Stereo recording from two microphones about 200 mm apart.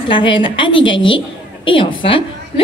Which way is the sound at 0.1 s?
25° left (ahead or behind).